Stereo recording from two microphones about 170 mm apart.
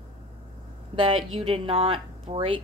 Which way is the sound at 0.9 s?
30° right (ahead or behind).